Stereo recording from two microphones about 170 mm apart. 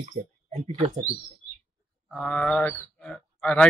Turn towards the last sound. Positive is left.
turn(degrees=5)  # may be behind; listen again after turning